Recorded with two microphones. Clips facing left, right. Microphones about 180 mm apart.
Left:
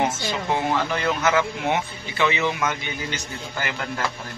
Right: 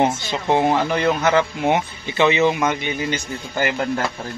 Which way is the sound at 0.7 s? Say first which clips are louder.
Right 5 dB; 30° right (ahead or behind).